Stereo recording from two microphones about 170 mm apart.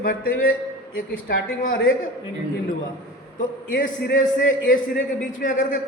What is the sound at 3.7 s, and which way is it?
A man's voice, 55° left (ahead or behind).